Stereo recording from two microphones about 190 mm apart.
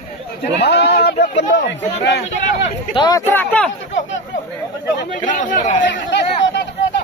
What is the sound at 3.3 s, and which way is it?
Speech, 10° left (ahead or behind).